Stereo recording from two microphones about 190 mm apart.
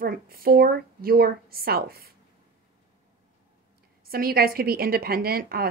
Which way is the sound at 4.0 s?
50° right (ahead or behind).